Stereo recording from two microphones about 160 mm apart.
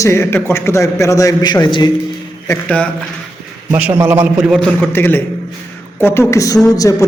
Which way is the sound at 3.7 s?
10° right (ahead or behind).